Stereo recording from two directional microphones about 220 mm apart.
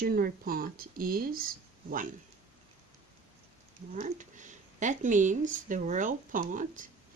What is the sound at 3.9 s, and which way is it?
Speech, 35° right (ahead or behind).